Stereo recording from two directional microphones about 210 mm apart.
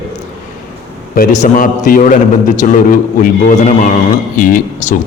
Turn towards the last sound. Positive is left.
turn(degrees=40)  # may be behind; listen again after turning